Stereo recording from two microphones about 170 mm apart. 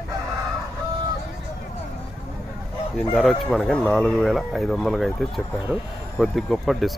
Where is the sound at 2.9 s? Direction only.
Centre (ahead or behind).